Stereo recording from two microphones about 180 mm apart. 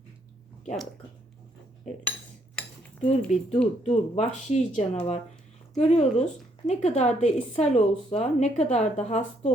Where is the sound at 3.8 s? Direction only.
35° left (ahead or behind).